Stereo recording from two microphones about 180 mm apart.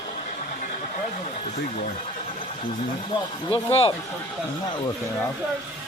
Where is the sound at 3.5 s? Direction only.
30° left (ahead or behind).